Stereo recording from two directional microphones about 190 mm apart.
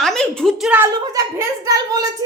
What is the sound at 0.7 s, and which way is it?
Speech, 15° right (ahead or behind).